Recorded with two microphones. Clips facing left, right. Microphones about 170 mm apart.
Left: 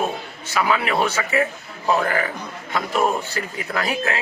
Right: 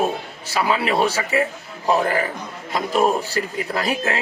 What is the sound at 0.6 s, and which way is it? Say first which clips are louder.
A man's voice: right 1 dB; 35° right (ahead or behind).